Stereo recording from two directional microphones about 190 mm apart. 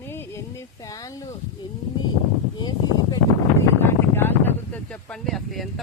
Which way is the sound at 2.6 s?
25° left (ahead or behind).